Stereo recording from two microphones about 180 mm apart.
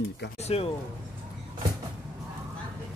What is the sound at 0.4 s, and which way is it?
Speech, 35° left (ahead or behind).